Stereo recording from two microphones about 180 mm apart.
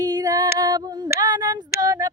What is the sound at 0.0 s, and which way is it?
Female singing, 20° right (ahead or behind).